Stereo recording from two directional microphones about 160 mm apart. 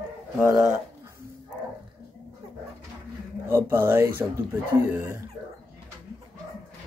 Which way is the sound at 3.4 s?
15° right (ahead or behind).